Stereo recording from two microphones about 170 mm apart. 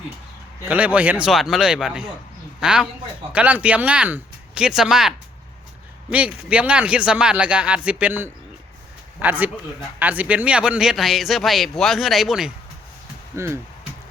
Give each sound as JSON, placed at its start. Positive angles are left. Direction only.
{"t": 0.6, "sound": "a man's voice", "side_deg": -10}
{"t": 13.3, "sound": "speech", "side_deg": -15}